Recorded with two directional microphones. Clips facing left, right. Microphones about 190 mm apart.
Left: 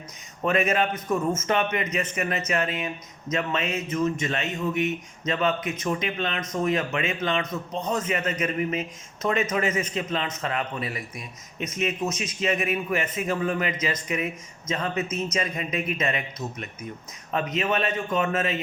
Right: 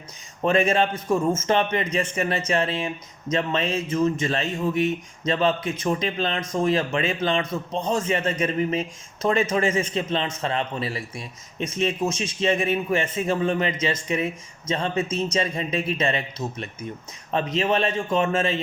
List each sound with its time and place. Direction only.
0.4 s a man's voice: 30° right (ahead or behind)